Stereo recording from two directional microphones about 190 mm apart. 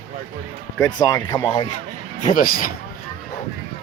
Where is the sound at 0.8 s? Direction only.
20° left (ahead or behind).